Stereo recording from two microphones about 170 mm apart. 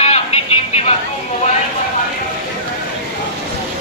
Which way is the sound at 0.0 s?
35° left (ahead or behind).